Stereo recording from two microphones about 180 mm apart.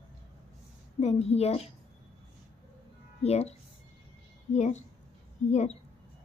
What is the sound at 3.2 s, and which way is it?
Speech, 35° left (ahead or behind).